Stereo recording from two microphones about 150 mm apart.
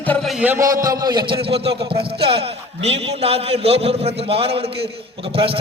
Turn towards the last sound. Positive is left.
turn(degrees=-40)  # may be behind; listen again after turning